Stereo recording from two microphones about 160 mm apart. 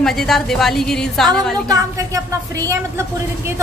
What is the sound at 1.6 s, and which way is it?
A woman's voice, 20° right (ahead or behind).